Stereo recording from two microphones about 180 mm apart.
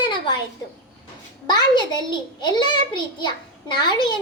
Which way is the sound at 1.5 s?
25° left (ahead or behind).